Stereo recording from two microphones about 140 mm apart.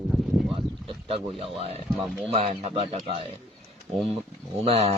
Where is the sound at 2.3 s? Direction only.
45° right (ahead or behind).